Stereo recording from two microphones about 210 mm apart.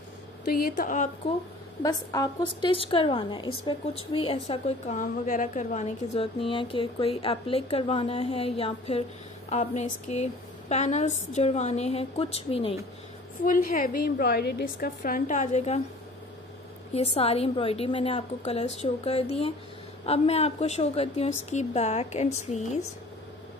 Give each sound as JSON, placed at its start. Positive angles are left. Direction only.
{"t": 0.5, "sound": "a woman's voice", "side_deg": 45}
{"t": 1.8, "sound": "a woman's voice", "side_deg": 15}
{"t": 13.5, "sound": "a woman's voice", "side_deg": 40}
{"t": 16.9, "sound": "a woman's voice", "side_deg": 30}